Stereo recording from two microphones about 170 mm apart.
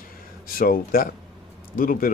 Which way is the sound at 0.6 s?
55° left (ahead or behind).